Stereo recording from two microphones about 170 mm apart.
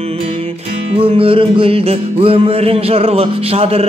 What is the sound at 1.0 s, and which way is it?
Music, 35° right (ahead or behind).